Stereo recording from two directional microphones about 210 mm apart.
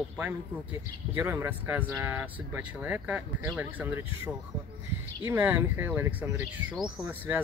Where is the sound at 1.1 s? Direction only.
10° right (ahead or behind).